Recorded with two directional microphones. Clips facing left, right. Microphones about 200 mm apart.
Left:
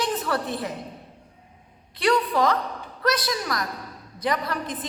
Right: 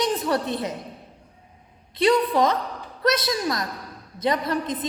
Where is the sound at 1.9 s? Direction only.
20° right (ahead or behind).